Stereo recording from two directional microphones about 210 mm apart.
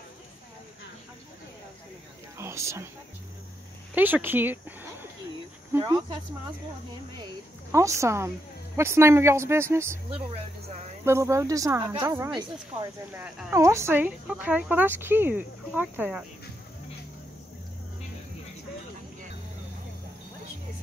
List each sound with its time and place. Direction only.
2.3 s a sound: 15° right (ahead or behind)
3.9 s speech: 10° right (ahead or behind)
7.7 s speech: 15° right (ahead or behind)
10.1 s speech: 30° right (ahead or behind)
11.1 s speech: 15° right (ahead or behind)